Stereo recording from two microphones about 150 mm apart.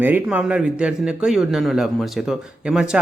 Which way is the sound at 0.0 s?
10° right (ahead or behind).